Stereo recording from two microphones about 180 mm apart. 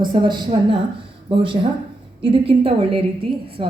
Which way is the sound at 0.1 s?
25° right (ahead or behind).